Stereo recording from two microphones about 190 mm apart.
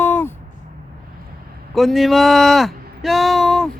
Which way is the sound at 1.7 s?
Centre (ahead or behind).